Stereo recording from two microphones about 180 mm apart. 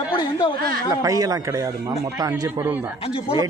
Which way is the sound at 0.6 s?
55° right (ahead or behind).